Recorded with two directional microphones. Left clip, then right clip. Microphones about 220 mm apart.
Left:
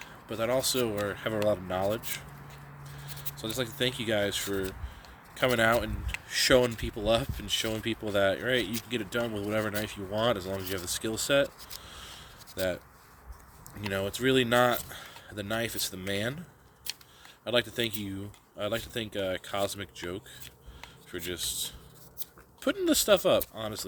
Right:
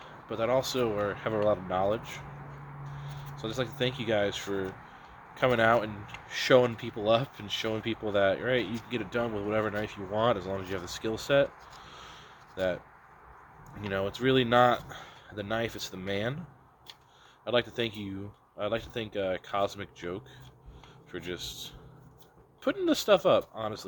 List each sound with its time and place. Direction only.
0.3 s speech: 50° left (ahead or behind)
3.3 s speech: 50° left (ahead or behind)
13.8 s speech: 50° left (ahead or behind)
17.4 s speech: 50° left (ahead or behind)